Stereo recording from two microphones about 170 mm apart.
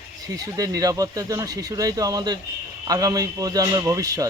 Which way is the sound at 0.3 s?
20° right (ahead or behind).